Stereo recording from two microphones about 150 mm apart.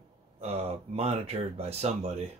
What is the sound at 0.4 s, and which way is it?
Speech, 40° right (ahead or behind).